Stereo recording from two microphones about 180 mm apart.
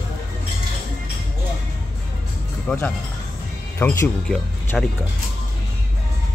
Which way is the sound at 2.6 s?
10° left (ahead or behind).